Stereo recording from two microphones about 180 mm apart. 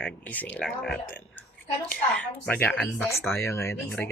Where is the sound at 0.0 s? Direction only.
10° left (ahead or behind).